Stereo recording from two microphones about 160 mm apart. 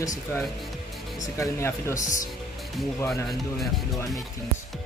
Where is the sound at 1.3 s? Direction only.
15° left (ahead or behind).